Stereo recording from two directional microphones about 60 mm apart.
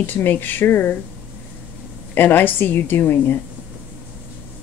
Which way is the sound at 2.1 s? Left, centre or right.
Left.